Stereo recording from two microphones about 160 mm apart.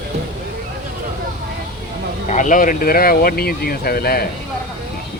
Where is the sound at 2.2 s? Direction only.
50° left (ahead or behind); by 4.3 s 75° left (ahead or behind).